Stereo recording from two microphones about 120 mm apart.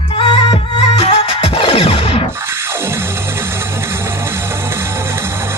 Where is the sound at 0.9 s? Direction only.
60° left (ahead or behind).